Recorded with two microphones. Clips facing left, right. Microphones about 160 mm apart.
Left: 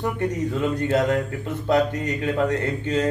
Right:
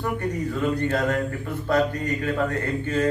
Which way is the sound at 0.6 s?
20° left (ahead or behind).